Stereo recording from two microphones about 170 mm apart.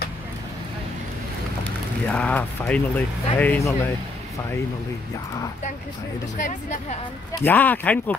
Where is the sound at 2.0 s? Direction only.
10° left (ahead or behind).